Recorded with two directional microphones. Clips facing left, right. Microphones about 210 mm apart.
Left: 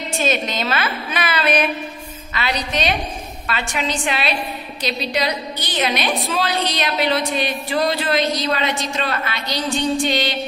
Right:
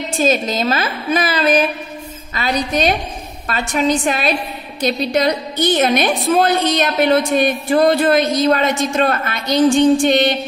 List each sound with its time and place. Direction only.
0.3 s a woman's voice: 40° right (ahead or behind)
2.3 s a woman's voice: 45° right (ahead or behind)